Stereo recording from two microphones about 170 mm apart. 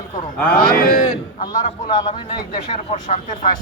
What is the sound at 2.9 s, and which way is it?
Speech, 45° left (ahead or behind).